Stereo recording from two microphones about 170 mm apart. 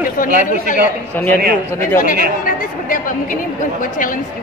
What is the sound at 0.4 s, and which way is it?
Speech, 50° left (ahead or behind).